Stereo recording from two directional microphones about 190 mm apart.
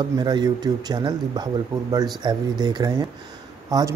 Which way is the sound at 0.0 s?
20° right (ahead or behind).